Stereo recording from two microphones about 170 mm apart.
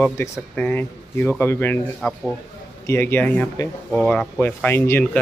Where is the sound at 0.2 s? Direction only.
10° left (ahead or behind).